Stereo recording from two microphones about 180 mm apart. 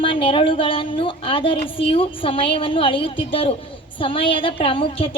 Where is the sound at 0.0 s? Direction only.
30° left (ahead or behind).